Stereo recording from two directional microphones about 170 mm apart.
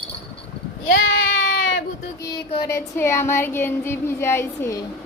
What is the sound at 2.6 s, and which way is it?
Child singing, 15° left (ahead or behind).